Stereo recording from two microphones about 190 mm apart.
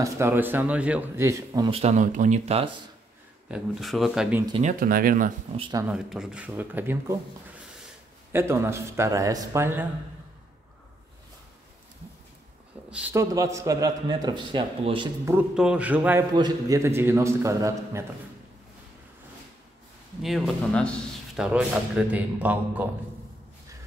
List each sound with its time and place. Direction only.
0.0 s a man's voice: 10° right (ahead or behind)
1.8 s speech: 35° right (ahead or behind)
3.4 s speech: centre (ahead or behind)
4.5 s speech: 35° right (ahead or behind)
4.7 s speech: 50° right (ahead or behind)
5.5 s speech: 30° right (ahead or behind)
5.8 s a man's voice: 5° right (ahead or behind)
8.3 s a man's voice: 15° right (ahead or behind)
12.9 s a man's voice: 10° right (ahead or behind)
15.2 s a man's voice: 5° right (ahead or behind)
16.3 s a man's voice: 20° right (ahead or behind)
20.2 s a man's voice: centre (ahead or behind)